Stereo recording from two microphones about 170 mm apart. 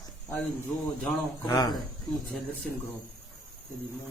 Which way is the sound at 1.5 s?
25° left (ahead or behind).